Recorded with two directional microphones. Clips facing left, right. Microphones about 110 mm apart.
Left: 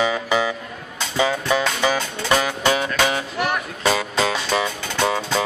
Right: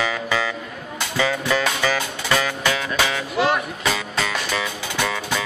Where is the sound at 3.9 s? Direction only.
30° left (ahead or behind).